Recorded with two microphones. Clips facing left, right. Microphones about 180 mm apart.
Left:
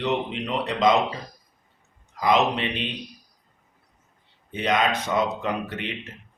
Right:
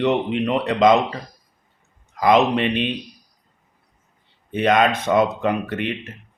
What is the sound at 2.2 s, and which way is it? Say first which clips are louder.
Speech: right 5 dB; 60° right (ahead or behind).